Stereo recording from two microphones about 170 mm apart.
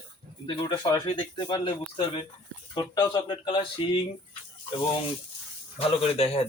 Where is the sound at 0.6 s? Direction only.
25° left (ahead or behind).